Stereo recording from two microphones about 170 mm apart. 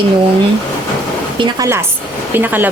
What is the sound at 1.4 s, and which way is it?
A woman's voice, 15° right (ahead or behind).